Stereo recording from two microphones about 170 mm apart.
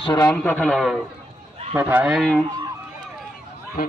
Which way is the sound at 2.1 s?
5° left (ahead or behind).